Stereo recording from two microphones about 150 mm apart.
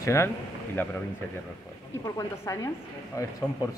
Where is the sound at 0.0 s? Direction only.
20° left (ahead or behind).